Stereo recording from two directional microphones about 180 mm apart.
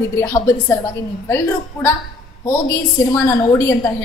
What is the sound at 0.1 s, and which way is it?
Speech, 15° left (ahead or behind).